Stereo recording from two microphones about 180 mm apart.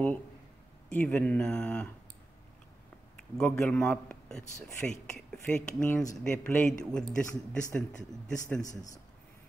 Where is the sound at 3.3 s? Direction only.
5° left (ahead or behind).